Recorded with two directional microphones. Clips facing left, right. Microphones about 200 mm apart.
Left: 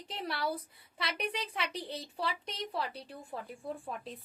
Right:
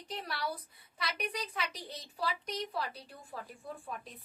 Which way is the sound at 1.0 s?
30° left (ahead or behind).